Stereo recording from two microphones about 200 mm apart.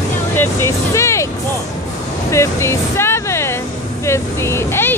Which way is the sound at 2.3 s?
15° left (ahead or behind).